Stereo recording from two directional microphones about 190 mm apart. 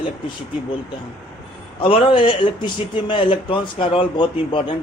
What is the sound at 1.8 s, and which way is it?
Speech, 30° left (ahead or behind).